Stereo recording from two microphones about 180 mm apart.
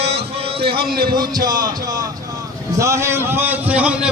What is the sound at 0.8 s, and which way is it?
Speech, 55° right (ahead or behind).